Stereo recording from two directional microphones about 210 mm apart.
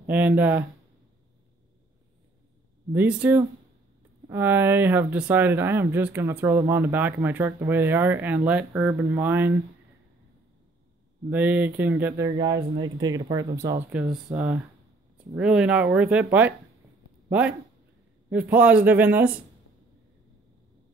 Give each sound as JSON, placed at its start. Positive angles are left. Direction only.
{"t": 0.0, "sound": "speech", "side_deg": -10}
{"t": 2.9, "sound": "speech", "side_deg": -5}
{"t": 11.2, "sound": "speech", "side_deg": -10}
{"t": 12.3, "sound": "speech", "side_deg": -20}
{"t": 14.1, "sound": "speech", "side_deg": -5}